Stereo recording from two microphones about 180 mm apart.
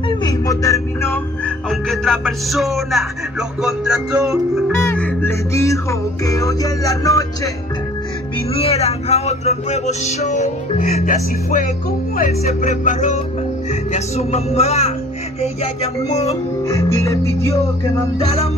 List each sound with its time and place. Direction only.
0.2 s music: 20° left (ahead or behind)
1.7 s speech: centre (ahead or behind)
4.7 s music: 10° left (ahead or behind)
8.5 s music: 35° left (ahead or behind)
16.6 s music: 15° left (ahead or behind)
18.2 s music: 35° left (ahead or behind)